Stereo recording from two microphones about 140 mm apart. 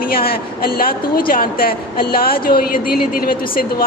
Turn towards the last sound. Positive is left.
turn(degrees=90)